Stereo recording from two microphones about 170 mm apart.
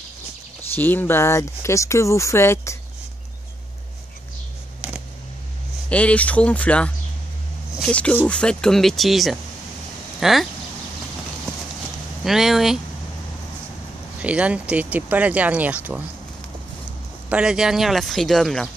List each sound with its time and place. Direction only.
0.7 s speech: 10° left (ahead or behind)
5.9 s speech: 10° left (ahead or behind)
12.3 s speech: centre (ahead or behind)
14.2 s speech: 5° right (ahead or behind)
17.3 s speech: 5° right (ahead or behind)